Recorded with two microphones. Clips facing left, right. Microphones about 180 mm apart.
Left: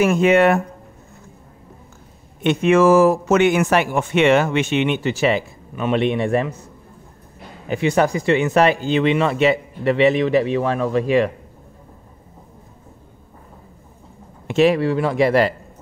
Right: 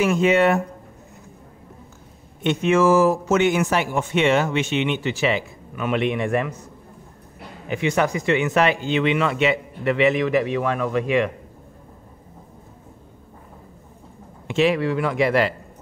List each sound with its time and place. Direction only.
0.0 s speech: 55° left (ahead or behind)
2.4 s speech: 65° left (ahead or behind); by 5.4 s 40° left (ahead or behind)
5.8 s a man's voice: 30° left (ahead or behind)
7.6 s speech: 35° left (ahead or behind)
14.5 s speech: 40° left (ahead or behind)